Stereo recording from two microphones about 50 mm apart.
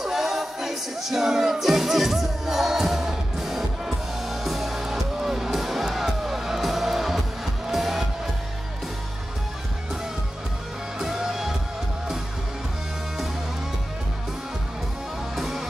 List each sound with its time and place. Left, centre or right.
0.0 s music: centre
11.0 s music: centre
15.3 s music: centre